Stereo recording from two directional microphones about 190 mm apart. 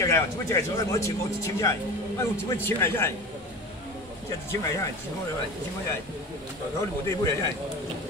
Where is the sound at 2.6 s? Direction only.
10° left (ahead or behind).